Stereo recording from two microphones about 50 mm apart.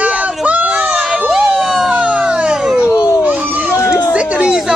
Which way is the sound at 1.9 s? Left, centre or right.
Right.